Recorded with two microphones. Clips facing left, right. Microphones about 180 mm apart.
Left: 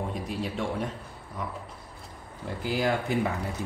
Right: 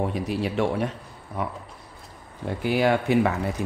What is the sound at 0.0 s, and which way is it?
Speech, 75° right (ahead or behind).